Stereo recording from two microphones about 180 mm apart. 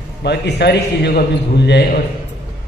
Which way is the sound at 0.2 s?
70° left (ahead or behind).